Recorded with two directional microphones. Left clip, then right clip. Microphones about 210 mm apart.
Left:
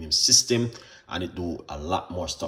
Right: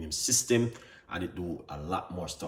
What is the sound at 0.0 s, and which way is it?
Speech, centre (ahead or behind).